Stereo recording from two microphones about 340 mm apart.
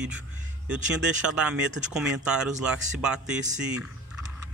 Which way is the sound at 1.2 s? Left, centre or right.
Centre.